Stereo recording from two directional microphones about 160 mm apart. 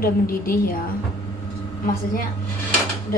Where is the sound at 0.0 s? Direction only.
65° left (ahead or behind).